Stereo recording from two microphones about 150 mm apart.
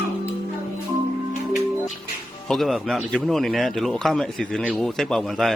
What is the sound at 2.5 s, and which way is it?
Speech, centre (ahead or behind).